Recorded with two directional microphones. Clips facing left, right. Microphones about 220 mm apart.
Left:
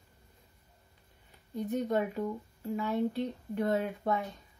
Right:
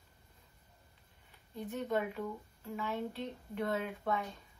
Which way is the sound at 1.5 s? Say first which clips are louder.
Left 5 dB; 40° left (ahead or behind).